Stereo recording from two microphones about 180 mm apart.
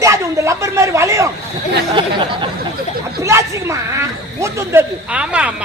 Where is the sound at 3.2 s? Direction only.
15° right (ahead or behind).